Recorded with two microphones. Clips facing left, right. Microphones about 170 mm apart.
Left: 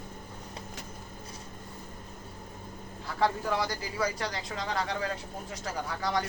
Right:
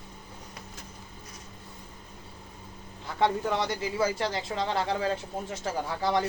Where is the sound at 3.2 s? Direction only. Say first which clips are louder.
Right 2 dB; 25° right (ahead or behind).